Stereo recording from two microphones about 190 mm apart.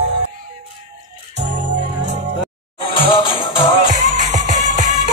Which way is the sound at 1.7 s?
40° right (ahead or behind).